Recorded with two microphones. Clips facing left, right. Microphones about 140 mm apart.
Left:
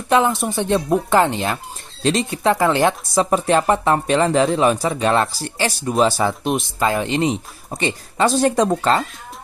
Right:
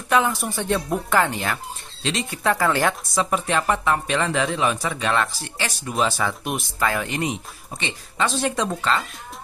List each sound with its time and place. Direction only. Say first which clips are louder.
0.1 s speech: left 4 dB; 25° left (ahead or behind)
3.2 s speech: left 7 dB; 35° left (ahead or behind)
7.7 s speech: left 8 dB; 40° left (ahead or behind)